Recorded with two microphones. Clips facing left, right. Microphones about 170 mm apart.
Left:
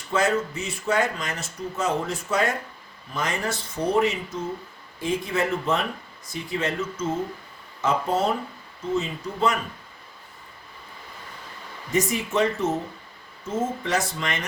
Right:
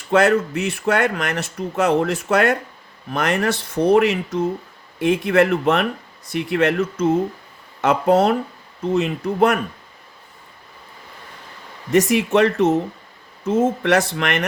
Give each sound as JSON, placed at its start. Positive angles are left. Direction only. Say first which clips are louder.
{"t": 0.1, "sound": "speech", "louder": "right 7 dB", "side_deg": -70}
{"t": 11.9, "sound": "speech", "louder": "right 9 dB", "side_deg": -70}